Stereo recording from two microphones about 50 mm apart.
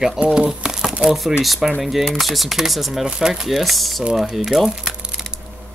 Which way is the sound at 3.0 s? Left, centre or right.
Centre.